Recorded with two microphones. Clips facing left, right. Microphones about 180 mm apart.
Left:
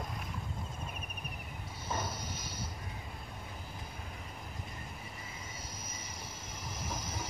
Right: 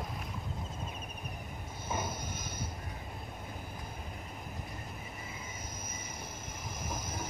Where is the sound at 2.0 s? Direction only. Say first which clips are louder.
Right 2 dB; 50° right (ahead or behind).